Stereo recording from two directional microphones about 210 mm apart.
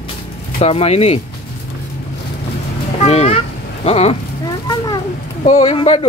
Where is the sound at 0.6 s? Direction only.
30° left (ahead or behind).